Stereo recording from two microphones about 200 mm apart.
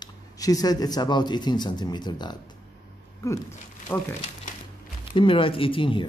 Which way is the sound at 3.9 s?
10° left (ahead or behind).